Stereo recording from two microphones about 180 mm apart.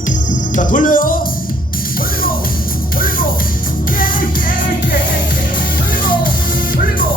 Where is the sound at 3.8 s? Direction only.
50° left (ahead or behind).